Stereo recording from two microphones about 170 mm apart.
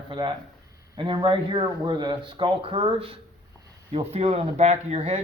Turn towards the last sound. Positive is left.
turn(degrees=-40)  # may be behind; listen again after turning